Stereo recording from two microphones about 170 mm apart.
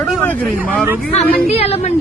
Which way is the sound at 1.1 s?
35° left (ahead or behind).